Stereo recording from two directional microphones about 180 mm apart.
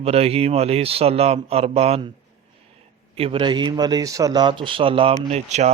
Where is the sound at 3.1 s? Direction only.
30° right (ahead or behind).